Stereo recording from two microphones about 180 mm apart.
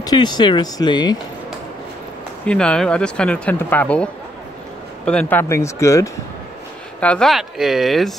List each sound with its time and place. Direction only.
0.0 s speech: 25° left (ahead or behind)
2.4 s speech: 5° left (ahead or behind)
7.0 s speech: 5° left (ahead or behind)